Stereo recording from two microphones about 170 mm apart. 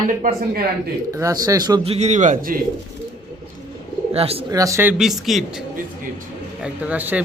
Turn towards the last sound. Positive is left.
turn(degrees=-10)  # may be behind; listen again after turning